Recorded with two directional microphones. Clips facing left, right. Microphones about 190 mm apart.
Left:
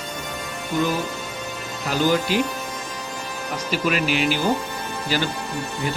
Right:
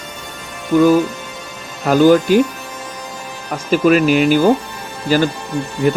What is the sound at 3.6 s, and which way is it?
Speech, 45° right (ahead or behind).